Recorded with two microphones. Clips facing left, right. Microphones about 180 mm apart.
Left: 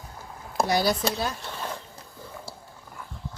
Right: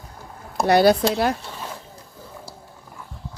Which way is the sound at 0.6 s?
65° right (ahead or behind).